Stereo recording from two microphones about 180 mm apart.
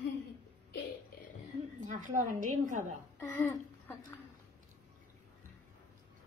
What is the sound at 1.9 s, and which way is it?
Speech, 45° right (ahead or behind).